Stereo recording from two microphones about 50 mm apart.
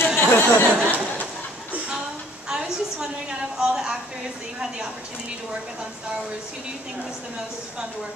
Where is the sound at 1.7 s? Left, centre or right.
Right.